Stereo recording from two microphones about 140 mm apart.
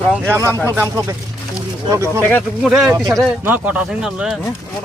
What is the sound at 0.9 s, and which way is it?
Speech, 20° right (ahead or behind).